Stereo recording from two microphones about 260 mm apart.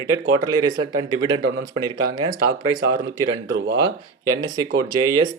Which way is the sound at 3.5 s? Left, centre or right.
Right.